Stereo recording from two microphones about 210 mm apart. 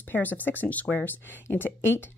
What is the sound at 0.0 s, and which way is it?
Speech, 10° left (ahead or behind).